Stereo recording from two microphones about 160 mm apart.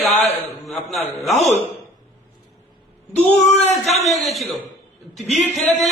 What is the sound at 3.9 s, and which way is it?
Speech, 40° left (ahead or behind).